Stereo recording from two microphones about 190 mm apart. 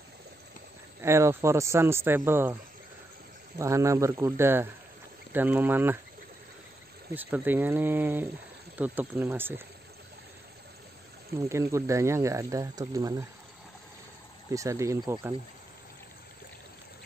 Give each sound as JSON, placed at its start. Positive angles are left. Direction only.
{"t": 1.0, "sound": "speech", "side_deg": -15}
{"t": 3.5, "sound": "speech", "side_deg": -15}
{"t": 7.2, "sound": "speech", "side_deg": -10}
{"t": 11.3, "sound": "speech", "side_deg": -15}
{"t": 14.5, "sound": "speech", "side_deg": -15}